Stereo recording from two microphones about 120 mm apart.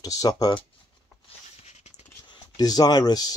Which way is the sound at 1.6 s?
70° left (ahead or behind).